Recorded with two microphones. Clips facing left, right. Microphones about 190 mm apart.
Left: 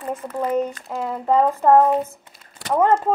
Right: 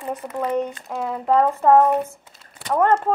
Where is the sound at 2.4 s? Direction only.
10° left (ahead or behind).